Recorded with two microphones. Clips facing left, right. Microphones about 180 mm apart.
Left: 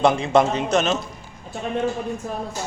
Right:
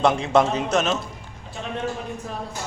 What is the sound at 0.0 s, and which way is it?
A man's voice, centre (ahead or behind).